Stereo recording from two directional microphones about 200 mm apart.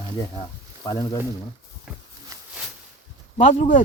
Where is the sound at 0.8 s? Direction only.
15° left (ahead or behind).